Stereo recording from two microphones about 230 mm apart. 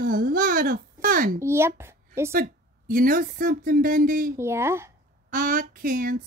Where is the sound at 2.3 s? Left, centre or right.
Right.